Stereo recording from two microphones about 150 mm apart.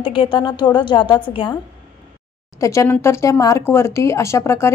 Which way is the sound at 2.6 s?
20° left (ahead or behind).